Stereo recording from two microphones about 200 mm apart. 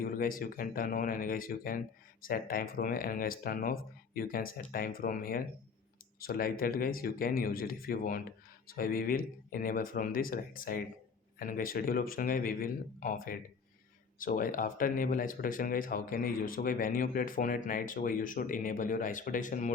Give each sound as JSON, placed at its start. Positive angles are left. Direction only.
{"t": 0.0, "sound": "speech", "side_deg": 45}